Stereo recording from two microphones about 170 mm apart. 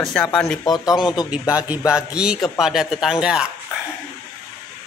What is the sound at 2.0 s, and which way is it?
Speech, 5° right (ahead or behind).